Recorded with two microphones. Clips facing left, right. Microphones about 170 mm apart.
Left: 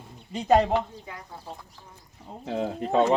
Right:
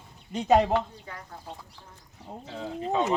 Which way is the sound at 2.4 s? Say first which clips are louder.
Left 5 dB; 60° left (ahead or behind).